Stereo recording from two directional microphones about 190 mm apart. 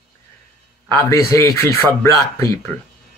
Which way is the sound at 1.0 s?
15° left (ahead or behind).